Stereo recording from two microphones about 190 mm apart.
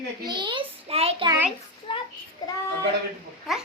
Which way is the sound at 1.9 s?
25° left (ahead or behind).